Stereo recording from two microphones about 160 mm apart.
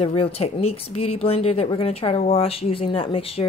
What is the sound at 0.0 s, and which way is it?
Speech, 35° left (ahead or behind).